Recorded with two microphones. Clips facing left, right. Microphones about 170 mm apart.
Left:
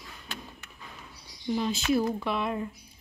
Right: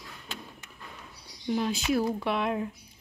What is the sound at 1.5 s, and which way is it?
Speech, 10° right (ahead or behind).